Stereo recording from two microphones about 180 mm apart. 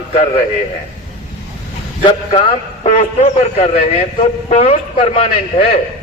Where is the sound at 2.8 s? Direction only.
40° left (ahead or behind).